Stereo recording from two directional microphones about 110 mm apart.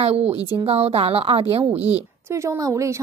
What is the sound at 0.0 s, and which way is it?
Speech, 65° right (ahead or behind).